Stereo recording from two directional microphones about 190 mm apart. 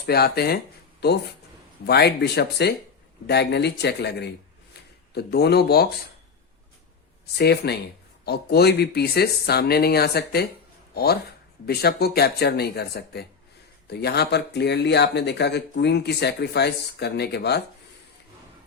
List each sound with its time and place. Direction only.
0.0 s speech: 55° left (ahead or behind)
7.3 s speech: 60° left (ahead or behind)